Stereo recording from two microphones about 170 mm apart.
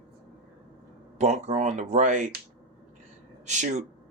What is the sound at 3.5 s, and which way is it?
Speech, 45° right (ahead or behind).